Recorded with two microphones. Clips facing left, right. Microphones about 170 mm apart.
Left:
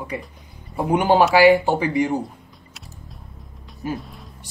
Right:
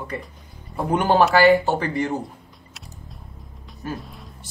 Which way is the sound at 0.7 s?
10° left (ahead or behind).